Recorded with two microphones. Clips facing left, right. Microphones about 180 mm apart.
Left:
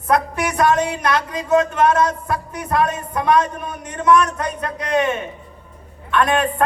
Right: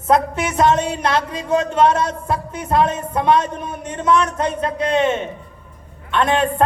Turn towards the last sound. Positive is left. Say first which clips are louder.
# even
turn(degrees=-25)  # may be behind; listen again after turning